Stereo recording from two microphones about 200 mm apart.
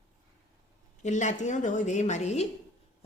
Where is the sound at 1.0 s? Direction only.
35° left (ahead or behind).